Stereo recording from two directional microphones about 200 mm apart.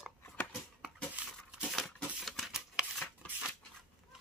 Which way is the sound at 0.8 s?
5° right (ahead or behind).